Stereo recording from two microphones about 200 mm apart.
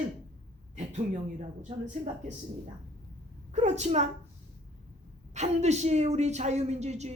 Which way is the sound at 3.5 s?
35° right (ahead or behind).